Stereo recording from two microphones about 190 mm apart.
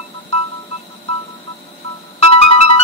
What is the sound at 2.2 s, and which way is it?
Music, 30° left (ahead or behind).